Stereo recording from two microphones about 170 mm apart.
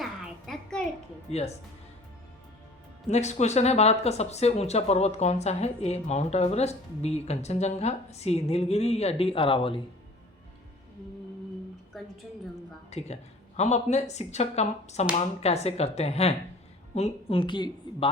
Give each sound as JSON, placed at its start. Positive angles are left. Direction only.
{"t": 0.0, "sound": "music", "side_deg": 0}
{"t": 1.3, "sound": "speech", "side_deg": 40}
{"t": 3.1, "sound": "speech", "side_deg": 40}
{"t": 11.9, "sound": "a sound", "side_deg": 0}
{"t": 12.9, "sound": "speech", "side_deg": 40}